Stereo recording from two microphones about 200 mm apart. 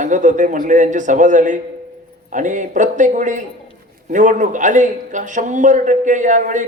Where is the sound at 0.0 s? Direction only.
40° right (ahead or behind).